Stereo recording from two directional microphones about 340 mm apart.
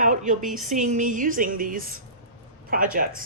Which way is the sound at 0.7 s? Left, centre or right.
Right.